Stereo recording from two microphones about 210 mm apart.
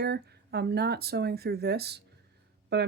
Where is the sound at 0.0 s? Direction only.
50° right (ahead or behind).